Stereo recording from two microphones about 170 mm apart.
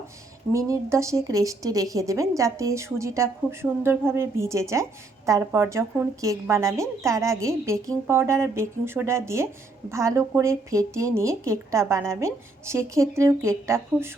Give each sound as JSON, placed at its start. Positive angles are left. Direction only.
{"t": 0.5, "sound": "a woman's voice", "side_deg": -15}